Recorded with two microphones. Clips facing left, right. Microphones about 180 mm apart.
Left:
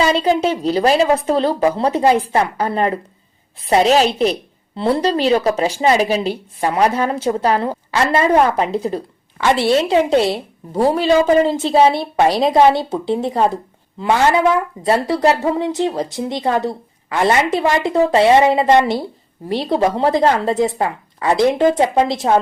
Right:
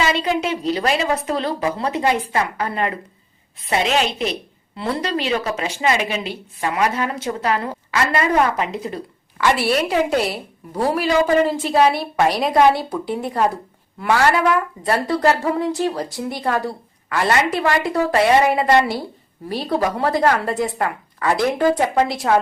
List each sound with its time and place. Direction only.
0.1 s a woman's voice: 35° left (ahead or behind)